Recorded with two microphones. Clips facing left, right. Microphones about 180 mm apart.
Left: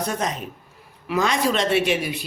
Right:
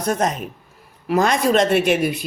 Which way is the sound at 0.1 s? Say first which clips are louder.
Right 5 dB; 50° right (ahead or behind).